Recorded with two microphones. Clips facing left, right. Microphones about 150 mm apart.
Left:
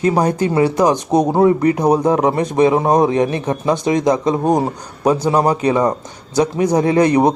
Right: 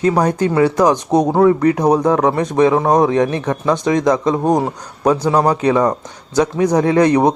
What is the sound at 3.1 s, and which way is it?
Speech, 5° left (ahead or behind).